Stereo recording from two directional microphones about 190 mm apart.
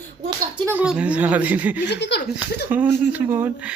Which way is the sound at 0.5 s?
5° right (ahead or behind).